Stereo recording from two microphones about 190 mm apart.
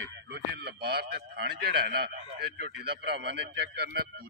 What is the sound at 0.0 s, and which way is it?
Speech, 65° right (ahead or behind).